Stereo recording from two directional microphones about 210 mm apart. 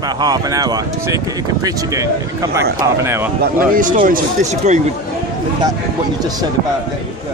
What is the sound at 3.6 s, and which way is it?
Speech, 40° right (ahead or behind).